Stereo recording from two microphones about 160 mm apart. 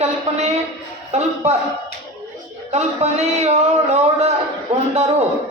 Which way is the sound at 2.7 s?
40° right (ahead or behind).